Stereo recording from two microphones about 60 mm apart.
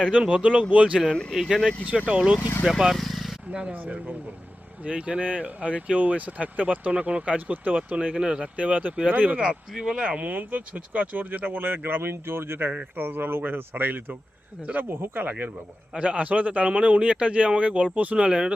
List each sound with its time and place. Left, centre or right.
0.1 s speech: centre
1.0 s speech: centre
1.3 s speech: centre
2.0 s speech: centre
2.6 s speech: centre
3.5 s speech: right
9.4 s speech: centre